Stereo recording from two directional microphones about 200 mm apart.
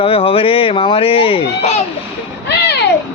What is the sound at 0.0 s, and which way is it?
Speech, 30° left (ahead or behind).